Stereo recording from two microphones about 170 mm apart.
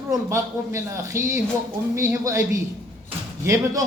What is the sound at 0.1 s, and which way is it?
A man's voice, 15° right (ahead or behind).